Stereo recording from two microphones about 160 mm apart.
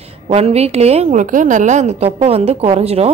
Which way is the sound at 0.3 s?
40° right (ahead or behind).